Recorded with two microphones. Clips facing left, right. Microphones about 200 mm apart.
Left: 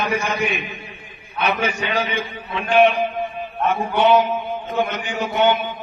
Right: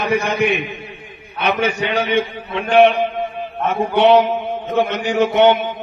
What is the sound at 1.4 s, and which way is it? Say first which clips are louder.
Speech: right 3 dB; 65° right (ahead or behind).